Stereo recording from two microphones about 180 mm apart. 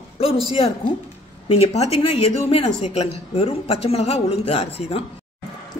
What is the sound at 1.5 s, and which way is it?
A woman's voice, 35° left (ahead or behind).